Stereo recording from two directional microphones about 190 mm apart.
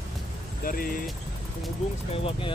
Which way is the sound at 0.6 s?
45° left (ahead or behind).